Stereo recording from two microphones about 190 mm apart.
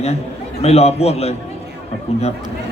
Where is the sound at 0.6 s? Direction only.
35° left (ahead or behind).